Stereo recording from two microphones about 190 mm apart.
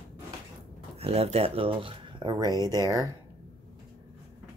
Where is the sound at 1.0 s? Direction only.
30° right (ahead or behind).